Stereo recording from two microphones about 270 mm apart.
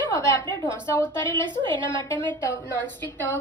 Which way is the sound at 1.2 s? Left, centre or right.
Centre.